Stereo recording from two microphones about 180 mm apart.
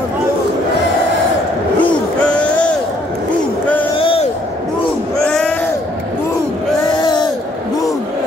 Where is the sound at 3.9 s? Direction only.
30° left (ahead or behind).